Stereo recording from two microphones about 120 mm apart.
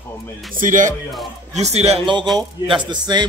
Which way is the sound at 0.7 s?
90° right.